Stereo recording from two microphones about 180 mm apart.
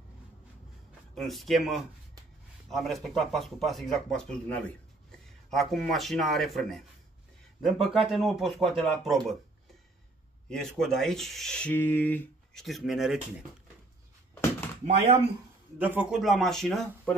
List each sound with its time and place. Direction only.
1.1 s speech: centre (ahead or behind)
10.5 s speech: 5° left (ahead or behind)
12.6 s speech: centre (ahead or behind)
15.8 s speech: 10° right (ahead or behind)